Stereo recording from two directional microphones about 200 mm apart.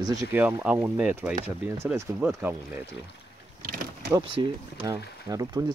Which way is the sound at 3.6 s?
45° right (ahead or behind).